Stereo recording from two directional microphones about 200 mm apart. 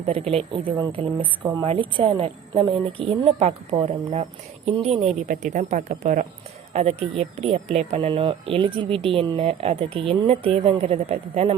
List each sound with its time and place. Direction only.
0.1 s a woman's voice: 30° right (ahead or behind)